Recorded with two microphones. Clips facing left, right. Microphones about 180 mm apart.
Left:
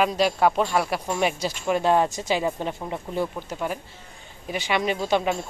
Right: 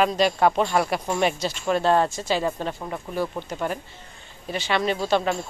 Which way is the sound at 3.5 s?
5° left (ahead or behind).